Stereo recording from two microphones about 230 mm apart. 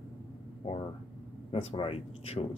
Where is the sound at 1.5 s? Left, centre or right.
Left.